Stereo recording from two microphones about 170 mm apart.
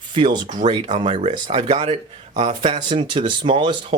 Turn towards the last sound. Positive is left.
turn(degrees=-30)  # may be behind; listen again after turning